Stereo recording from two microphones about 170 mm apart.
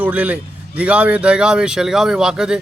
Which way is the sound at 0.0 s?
10° right (ahead or behind).